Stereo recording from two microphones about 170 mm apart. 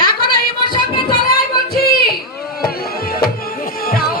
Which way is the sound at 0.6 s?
25° left (ahead or behind).